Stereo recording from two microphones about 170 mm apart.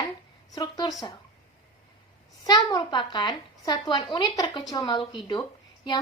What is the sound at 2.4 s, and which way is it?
A woman's voice, 25° left (ahead or behind).